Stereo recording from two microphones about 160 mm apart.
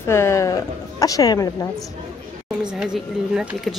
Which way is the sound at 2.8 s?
5° right (ahead or behind).